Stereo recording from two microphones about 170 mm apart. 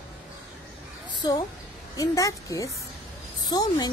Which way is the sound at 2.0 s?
20° left (ahead or behind).